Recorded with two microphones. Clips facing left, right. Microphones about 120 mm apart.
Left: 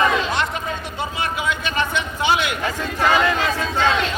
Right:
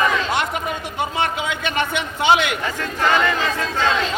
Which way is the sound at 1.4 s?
20° right (ahead or behind).